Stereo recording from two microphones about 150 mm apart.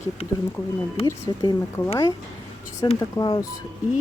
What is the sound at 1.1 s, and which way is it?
Speech, 20° left (ahead or behind).